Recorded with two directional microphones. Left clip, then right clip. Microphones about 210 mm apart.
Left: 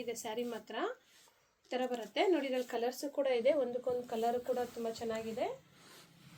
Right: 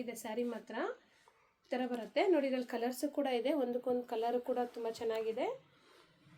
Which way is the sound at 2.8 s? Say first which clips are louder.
Left 2 dB; 55° right (ahead or behind).